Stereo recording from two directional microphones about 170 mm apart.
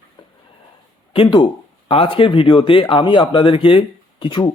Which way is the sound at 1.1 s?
30° left (ahead or behind).